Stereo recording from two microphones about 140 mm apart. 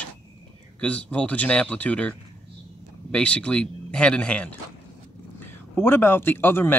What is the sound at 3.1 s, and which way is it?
Speech, 10° left (ahead or behind).